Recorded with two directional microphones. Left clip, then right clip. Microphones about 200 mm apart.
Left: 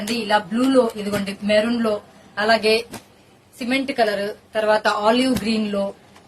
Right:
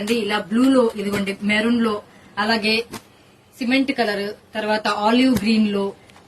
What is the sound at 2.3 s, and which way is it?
A woman's voice, 30° left (ahead or behind).